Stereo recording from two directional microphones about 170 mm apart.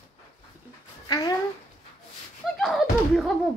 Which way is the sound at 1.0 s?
25° left (ahead or behind).